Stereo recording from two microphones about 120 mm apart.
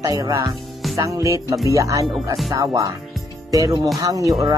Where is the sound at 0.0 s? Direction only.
30° right (ahead or behind).